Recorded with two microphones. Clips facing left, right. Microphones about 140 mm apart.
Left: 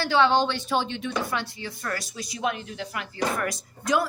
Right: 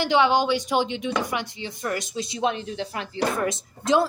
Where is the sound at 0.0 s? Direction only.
15° right (ahead or behind).